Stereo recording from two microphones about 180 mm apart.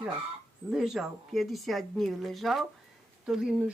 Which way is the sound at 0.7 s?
Centre (ahead or behind).